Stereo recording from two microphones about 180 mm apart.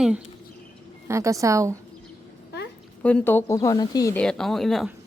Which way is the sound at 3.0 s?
5° left (ahead or behind).